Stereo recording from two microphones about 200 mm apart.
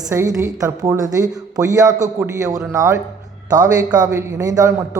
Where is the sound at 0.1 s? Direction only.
15° right (ahead or behind).